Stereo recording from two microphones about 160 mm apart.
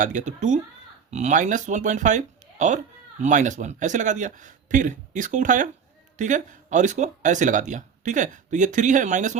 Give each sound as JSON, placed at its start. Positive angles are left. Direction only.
{"t": 0.0, "sound": "speech", "side_deg": -50}